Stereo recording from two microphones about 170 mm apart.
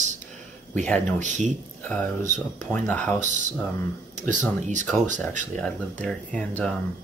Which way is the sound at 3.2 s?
45° right (ahead or behind).